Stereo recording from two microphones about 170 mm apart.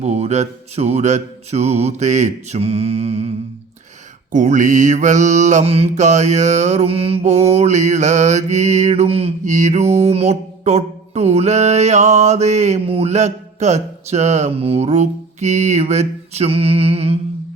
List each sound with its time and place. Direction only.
0.0 s mantra: 40° right (ahead or behind)